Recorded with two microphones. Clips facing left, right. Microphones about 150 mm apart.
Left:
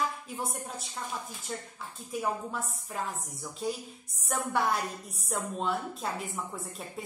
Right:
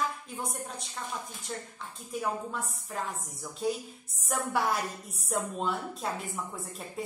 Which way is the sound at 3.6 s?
Centre (ahead or behind).